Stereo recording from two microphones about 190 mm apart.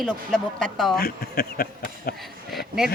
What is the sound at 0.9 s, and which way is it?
Speech, 50° left (ahead or behind).